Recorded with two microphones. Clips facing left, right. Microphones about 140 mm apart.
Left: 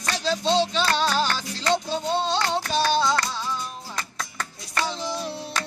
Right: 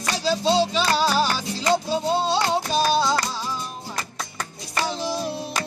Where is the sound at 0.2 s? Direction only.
5° right (ahead or behind).